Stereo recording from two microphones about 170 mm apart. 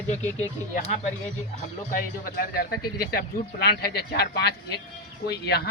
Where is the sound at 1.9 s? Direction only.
55° left (ahead or behind).